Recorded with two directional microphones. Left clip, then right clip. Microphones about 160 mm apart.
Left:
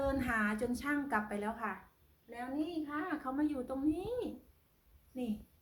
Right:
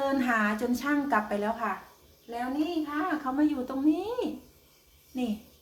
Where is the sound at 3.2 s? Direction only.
Centre (ahead or behind).